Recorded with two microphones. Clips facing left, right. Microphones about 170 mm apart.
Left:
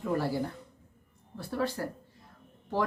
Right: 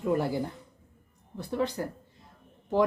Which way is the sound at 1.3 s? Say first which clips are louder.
Right 2 dB; 20° right (ahead or behind).